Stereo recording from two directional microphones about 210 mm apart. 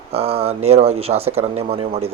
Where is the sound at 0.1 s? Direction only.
30° right (ahead or behind).